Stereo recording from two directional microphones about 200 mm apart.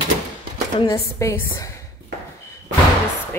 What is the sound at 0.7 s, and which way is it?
Speech, 15° left (ahead or behind).